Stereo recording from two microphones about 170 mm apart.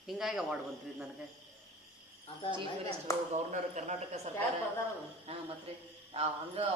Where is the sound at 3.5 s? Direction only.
45° right (ahead or behind).